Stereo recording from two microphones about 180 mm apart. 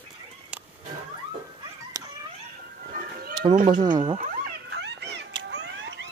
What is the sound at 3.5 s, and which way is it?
Cat, 50° right (ahead or behind).